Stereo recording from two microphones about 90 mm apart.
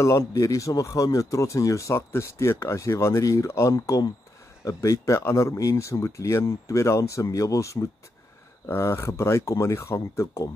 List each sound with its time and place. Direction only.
0.0 s speech: 35° left (ahead or behind)